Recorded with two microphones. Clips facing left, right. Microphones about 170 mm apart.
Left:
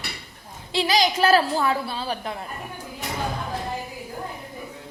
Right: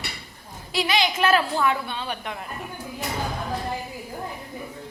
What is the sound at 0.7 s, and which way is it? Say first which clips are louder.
A woman's voice: left 2 dB; 35° left (ahead or behind).